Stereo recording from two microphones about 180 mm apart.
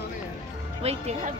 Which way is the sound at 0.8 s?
35° right (ahead or behind).